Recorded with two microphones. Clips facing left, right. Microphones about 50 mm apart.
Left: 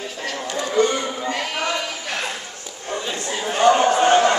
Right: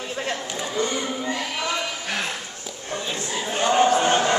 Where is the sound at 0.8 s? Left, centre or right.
Left.